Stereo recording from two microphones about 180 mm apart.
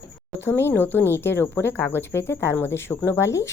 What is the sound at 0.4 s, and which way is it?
A woman's voice, 15° left (ahead or behind).